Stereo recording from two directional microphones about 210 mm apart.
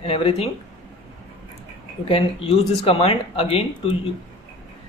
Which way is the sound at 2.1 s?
25° left (ahead or behind).